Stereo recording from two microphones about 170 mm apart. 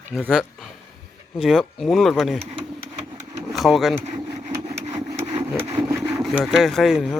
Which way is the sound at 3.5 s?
Centre (ahead or behind).